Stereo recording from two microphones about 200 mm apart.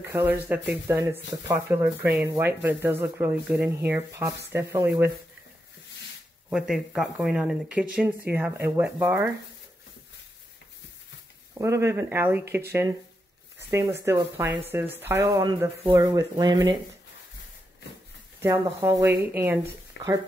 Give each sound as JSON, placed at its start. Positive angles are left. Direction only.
{"t": 0.0, "sound": "speech", "side_deg": -10}
{"t": 6.5, "sound": "speech", "side_deg": -5}
{"t": 11.5, "sound": "speech", "side_deg": -15}
{"t": 18.4, "sound": "speech", "side_deg": -15}